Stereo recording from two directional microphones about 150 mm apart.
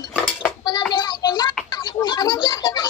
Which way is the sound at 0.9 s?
30° left (ahead or behind).